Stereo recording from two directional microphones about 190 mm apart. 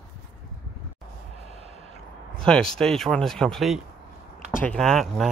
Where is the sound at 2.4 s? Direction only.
5° left (ahead or behind).